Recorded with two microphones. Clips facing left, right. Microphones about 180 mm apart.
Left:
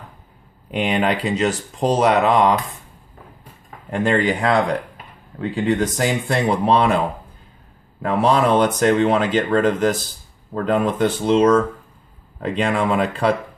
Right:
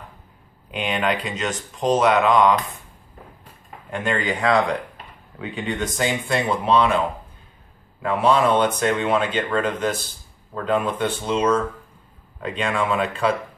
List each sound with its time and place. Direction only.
0.8 s speech: 30° left (ahead or behind)
3.9 s speech: 35° left (ahead or behind)
8.0 s speech: 40° left (ahead or behind)